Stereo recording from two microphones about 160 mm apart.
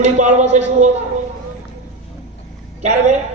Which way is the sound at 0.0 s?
45° right (ahead or behind).